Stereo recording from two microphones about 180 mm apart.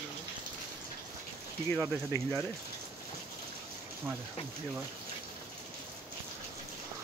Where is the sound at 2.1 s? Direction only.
15° left (ahead or behind).